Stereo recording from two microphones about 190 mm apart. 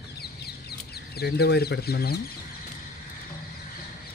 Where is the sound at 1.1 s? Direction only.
55° left (ahead or behind).